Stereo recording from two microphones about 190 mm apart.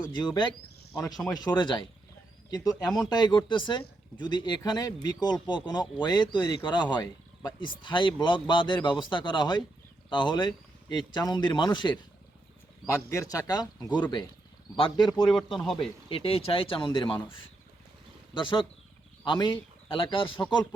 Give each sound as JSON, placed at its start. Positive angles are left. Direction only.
{"t": 0.1, "sound": "speech", "side_deg": 25}
{"t": 3.1, "sound": "speech", "side_deg": 20}
{"t": 15.3, "sound": "speech", "side_deg": 0}
{"t": 16.0, "sound": "speech", "side_deg": 30}
{"t": 18.3, "sound": "speech", "side_deg": 25}